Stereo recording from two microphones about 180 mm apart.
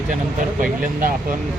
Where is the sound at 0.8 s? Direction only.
50° right (ahead or behind).